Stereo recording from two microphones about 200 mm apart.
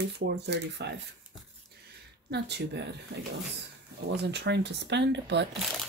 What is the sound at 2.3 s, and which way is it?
Speech, 55° right (ahead or behind).